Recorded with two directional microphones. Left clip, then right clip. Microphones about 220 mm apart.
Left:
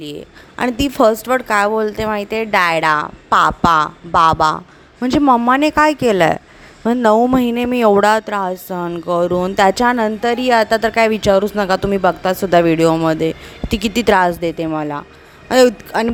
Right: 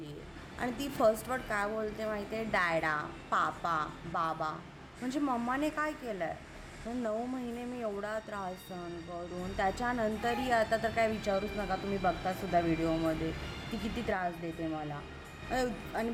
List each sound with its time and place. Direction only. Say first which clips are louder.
0.6 s a woman's voice: left 16 dB; 40° left (ahead or behind)